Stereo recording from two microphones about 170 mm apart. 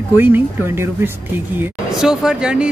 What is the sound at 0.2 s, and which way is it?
Speech, 10° right (ahead or behind).